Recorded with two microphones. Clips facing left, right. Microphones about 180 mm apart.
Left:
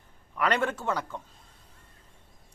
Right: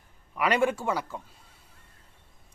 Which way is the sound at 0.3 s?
10° right (ahead or behind).